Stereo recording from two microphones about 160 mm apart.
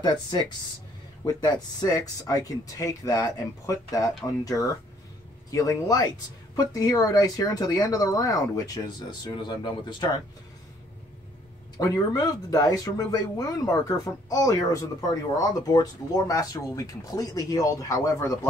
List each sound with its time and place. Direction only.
0.0 s speech: 25° left (ahead or behind)
5.5 s speech: 20° left (ahead or behind)
11.8 s speech: 20° left (ahead or behind)